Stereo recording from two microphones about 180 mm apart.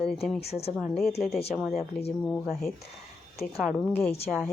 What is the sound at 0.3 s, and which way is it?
Speech, 35° left (ahead or behind).